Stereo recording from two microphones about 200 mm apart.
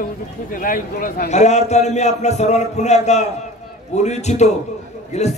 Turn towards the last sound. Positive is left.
turn(degrees=35)  # may be behind; listen again after turning